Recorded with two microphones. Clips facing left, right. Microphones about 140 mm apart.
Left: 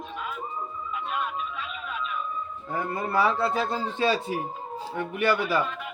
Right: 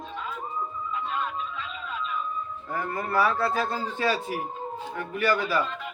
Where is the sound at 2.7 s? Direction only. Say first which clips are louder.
Left 1 dB; 20° left (ahead or behind).